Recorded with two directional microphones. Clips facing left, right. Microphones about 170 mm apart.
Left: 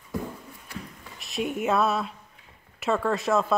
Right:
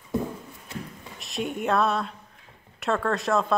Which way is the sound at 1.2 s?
Centre (ahead or behind).